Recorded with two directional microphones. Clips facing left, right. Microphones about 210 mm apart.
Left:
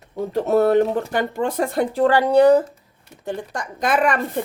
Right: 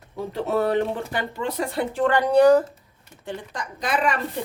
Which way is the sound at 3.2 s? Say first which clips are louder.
Left 5 dB; 40° left (ahead or behind).